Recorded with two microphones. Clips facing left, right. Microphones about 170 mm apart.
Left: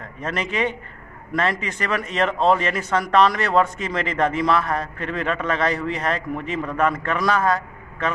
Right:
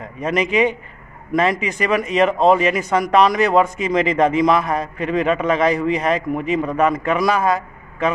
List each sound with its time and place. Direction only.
0.2 s speech: 15° right (ahead or behind)